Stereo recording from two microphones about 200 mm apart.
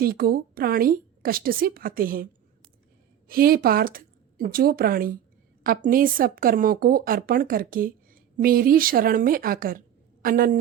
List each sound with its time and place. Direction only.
0.0 s a woman's voice: 50° right (ahead or behind)